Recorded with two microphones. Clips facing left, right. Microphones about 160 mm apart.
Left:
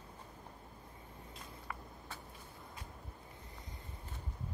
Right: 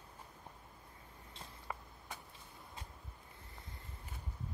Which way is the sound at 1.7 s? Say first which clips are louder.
Right 2 dB; 25° right (ahead or behind).